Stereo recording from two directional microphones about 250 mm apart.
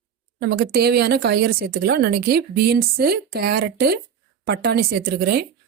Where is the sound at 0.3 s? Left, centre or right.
Right.